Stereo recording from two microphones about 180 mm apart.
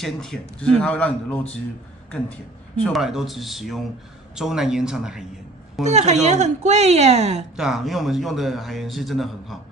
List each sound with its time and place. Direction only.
0.0 s a man's voice: centre (ahead or behind)
2.7 s a man's voice: 5° left (ahead or behind)
5.9 s speech: 40° right (ahead or behind)
7.5 s a man's voice: centre (ahead or behind)